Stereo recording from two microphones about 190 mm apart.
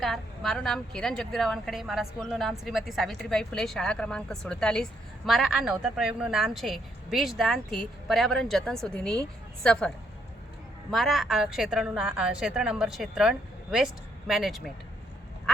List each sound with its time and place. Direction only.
0.0 s a woman's voice: centre (ahead or behind)
10.9 s a woman's voice: centre (ahead or behind)